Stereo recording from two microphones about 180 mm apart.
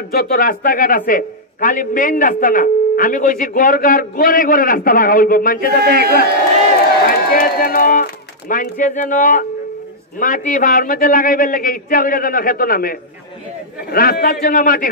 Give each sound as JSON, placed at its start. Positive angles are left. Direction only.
{"t": 0.1, "sound": "speech", "side_deg": 55}
{"t": 5.8, "sound": "speech", "side_deg": -60}
{"t": 7.1, "sound": "a man's voice", "side_deg": 55}